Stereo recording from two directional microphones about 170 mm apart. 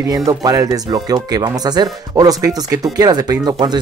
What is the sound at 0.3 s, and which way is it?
Speech, 20° right (ahead or behind).